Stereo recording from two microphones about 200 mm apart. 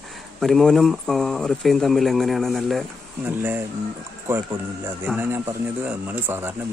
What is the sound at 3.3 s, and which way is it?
Speech, 10° right (ahead or behind).